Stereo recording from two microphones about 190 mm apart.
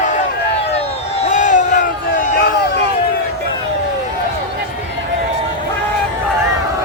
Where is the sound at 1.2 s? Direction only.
40° left (ahead or behind).